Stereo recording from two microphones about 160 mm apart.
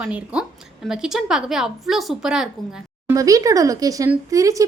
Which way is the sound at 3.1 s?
20° right (ahead or behind).